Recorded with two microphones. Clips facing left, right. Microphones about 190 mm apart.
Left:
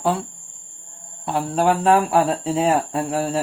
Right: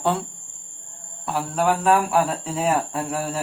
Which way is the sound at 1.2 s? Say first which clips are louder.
Left 3 dB; 30° left (ahead or behind).